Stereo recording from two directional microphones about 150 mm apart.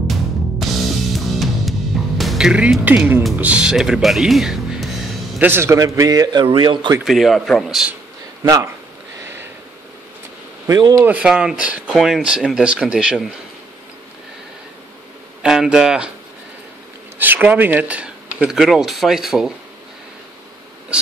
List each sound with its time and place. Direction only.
0.0 s music: centre (ahead or behind)
3.3 s speech: 10° right (ahead or behind)
5.5 s a man's voice: 15° right (ahead or behind)
7.1 s speech: centre (ahead or behind)
9.2 s a sound: 15° right (ahead or behind)
10.7 s a man's voice: 25° right (ahead or behind)
11.1 s speech: 5° right (ahead or behind)
15.4 s speech: 5° right (ahead or behind)
17.2 s speech: 10° right (ahead or behind)
20.9 s a sound: 5° right (ahead or behind)